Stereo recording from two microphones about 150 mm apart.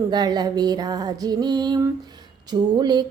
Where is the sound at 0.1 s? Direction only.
25° right (ahead or behind).